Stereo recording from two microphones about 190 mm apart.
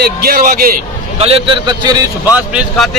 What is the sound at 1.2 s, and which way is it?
Speech, 30° right (ahead or behind).